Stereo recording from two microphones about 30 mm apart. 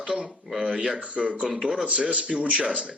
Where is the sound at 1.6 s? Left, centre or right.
Right.